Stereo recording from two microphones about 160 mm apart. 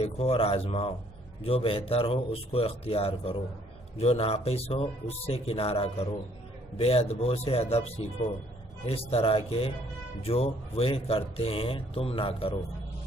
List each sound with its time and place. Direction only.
0.0 s speech: 40° left (ahead or behind)